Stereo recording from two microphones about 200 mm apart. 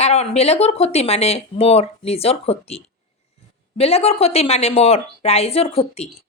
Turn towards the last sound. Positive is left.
turn(degrees=30)  # may be behind; listen again after turning